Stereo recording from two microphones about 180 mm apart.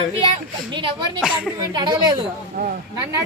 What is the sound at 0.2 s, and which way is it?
Speech, 25° right (ahead or behind).